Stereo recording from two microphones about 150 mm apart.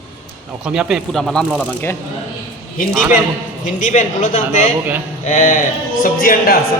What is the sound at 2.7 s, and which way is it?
A man's voice, 65° left (ahead or behind).